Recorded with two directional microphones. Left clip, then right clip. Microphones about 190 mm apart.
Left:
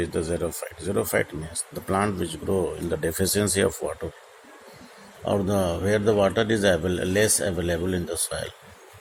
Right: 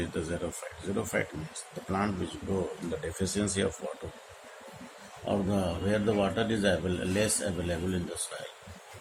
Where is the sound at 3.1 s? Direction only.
45° left (ahead or behind).